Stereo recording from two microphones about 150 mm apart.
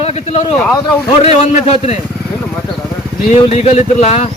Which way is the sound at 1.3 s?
50° left (ahead or behind).